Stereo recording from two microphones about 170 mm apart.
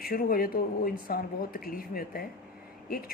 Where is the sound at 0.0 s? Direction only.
60° left (ahead or behind).